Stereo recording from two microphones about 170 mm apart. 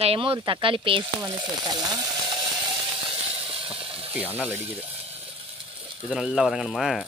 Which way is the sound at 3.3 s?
30° right (ahead or behind).